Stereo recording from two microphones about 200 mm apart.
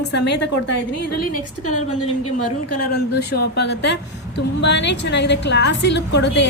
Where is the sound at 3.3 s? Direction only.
55° left (ahead or behind).